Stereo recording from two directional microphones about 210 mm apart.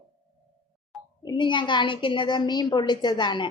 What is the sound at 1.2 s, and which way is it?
A woman's voice, 20° left (ahead or behind).